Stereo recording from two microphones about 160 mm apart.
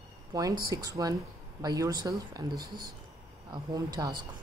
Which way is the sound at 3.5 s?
25° right (ahead or behind).